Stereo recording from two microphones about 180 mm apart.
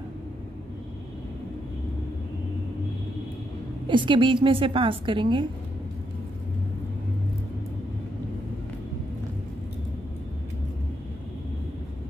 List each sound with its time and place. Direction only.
3.8 s a woman's voice: 25° right (ahead or behind)